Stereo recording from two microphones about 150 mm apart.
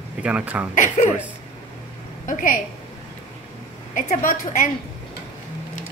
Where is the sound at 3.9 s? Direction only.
60° left (ahead or behind).